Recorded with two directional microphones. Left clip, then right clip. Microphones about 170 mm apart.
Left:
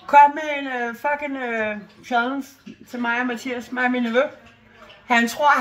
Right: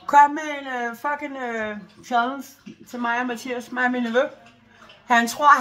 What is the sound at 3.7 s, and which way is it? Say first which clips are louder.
Speech: left 1 dB; 5° right (ahead or behind).